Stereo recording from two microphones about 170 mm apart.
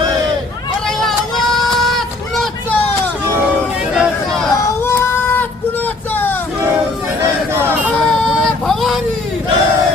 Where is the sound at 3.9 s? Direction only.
Centre (ahead or behind).